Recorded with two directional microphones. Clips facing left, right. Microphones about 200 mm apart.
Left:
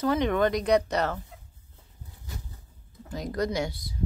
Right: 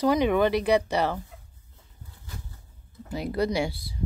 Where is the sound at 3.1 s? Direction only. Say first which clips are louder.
Right 3 dB; 10° right (ahead or behind).